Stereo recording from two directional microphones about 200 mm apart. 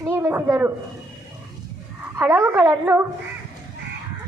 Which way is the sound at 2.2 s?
15° right (ahead or behind).